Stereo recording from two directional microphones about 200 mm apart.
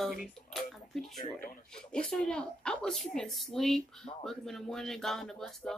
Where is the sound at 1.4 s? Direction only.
40° left (ahead or behind).